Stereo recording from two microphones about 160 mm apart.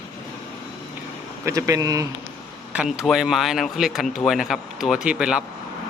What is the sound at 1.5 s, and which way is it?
Speech, 20° right (ahead or behind).